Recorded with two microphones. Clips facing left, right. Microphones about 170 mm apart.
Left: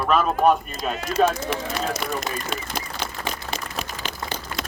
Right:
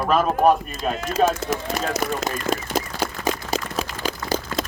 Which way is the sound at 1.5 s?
40° right (ahead or behind).